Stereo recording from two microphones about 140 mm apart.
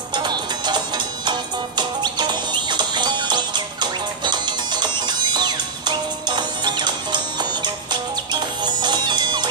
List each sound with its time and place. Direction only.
0.1 s music: 30° right (ahead or behind)